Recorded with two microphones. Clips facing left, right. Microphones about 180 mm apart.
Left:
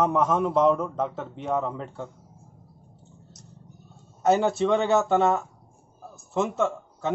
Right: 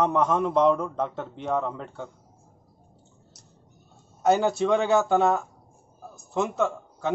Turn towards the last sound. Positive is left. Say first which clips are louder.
# even
turn(degrees=0)  # may be behind; listen again after turning